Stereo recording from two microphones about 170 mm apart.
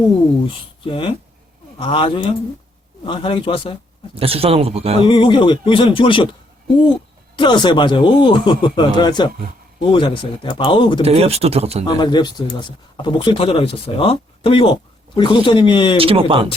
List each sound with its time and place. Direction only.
0.4 s speech: 30° left (ahead or behind)
4.1 s speech: 35° right (ahead or behind)
5.0 s speech: 30° left (ahead or behind)
7.3 s speech: 25° left (ahead or behind)
11.0 s speech: 35° right (ahead or behind)
11.9 s speech: 25° left (ahead or behind)
16.0 s speech: 35° right (ahead or behind)